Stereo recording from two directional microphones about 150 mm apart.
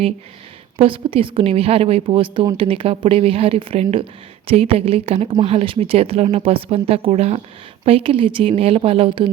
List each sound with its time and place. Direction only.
0.8 s speech: 35° right (ahead or behind)